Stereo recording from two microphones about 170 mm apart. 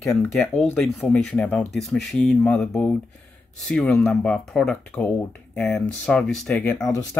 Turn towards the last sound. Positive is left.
turn(degrees=5)  # may be behind; listen again after turning